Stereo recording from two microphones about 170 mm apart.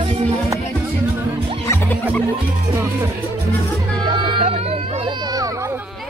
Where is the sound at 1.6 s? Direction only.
15° left (ahead or behind).